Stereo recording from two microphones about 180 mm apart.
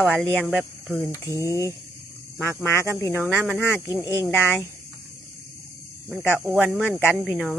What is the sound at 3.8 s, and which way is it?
Speech, 15° right (ahead or behind).